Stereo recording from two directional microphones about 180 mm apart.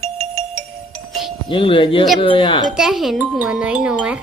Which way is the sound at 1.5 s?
30° left (ahead or behind).